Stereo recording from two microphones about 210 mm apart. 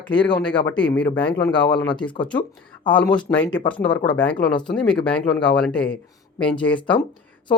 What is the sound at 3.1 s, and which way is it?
Speech, 5° left (ahead or behind).